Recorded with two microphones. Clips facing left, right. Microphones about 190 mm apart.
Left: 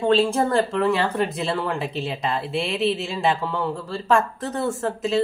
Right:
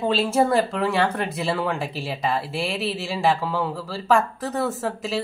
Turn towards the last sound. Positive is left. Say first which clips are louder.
# left 3 dB
turn(degrees=0)  # may be behind; listen again after turning